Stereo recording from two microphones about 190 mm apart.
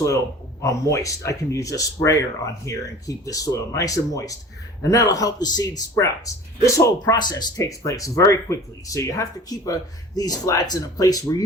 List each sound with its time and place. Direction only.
0.6 s speech: 15° left (ahead or behind)